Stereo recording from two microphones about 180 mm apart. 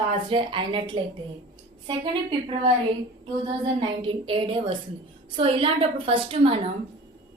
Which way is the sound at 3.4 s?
30° right (ahead or behind).